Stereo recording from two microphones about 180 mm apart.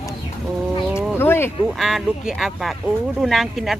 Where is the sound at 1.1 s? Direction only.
15° left (ahead or behind).